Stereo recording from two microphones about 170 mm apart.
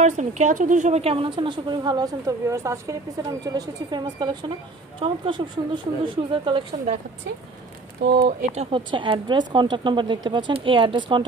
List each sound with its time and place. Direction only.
0.0 s a woman's voice: 45° right (ahead or behind)
8.3 s a woman's voice: 40° right (ahead or behind)